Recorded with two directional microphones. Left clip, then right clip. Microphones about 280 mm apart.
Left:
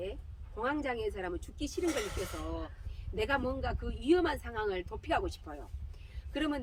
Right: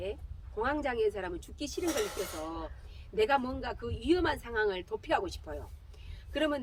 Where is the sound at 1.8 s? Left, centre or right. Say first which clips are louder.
Right 2 dB; right.